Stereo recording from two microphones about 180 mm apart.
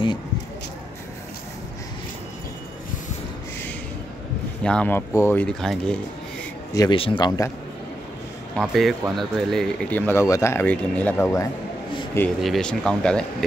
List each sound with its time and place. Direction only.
4.6 s speech: 10° left (ahead or behind)
6.7 s speech: 20° left (ahead or behind)
8.5 s speech: centre (ahead or behind)
12.4 s speech: centre (ahead or behind)